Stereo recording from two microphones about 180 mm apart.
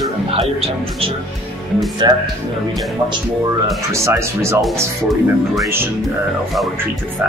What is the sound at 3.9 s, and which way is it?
Speech, 15° right (ahead or behind).